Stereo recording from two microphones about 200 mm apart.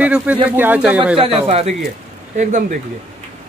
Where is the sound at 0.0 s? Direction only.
5° right (ahead or behind).